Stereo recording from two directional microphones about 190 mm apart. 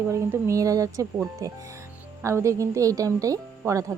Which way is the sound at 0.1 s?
15° right (ahead or behind).